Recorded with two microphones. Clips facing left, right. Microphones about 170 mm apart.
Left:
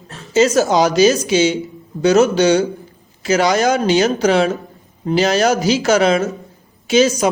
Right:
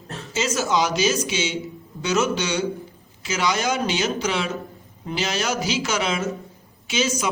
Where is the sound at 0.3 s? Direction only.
40° left (ahead or behind).